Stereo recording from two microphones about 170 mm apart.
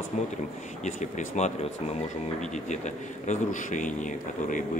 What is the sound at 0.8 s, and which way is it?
Speech, 45° left (ahead or behind).